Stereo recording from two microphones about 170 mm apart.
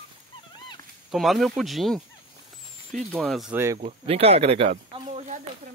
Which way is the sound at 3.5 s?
15° right (ahead or behind).